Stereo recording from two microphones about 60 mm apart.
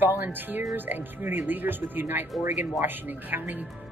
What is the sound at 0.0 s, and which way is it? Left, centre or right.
A woman's voice, right.